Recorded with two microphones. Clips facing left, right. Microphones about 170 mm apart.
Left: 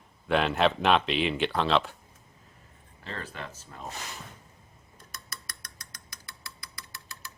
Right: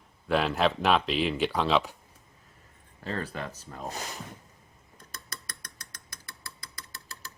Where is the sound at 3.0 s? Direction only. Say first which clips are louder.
Right 5 dB; 40° right (ahead or behind).